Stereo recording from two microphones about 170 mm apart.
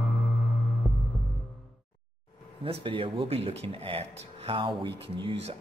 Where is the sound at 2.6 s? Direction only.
30° right (ahead or behind).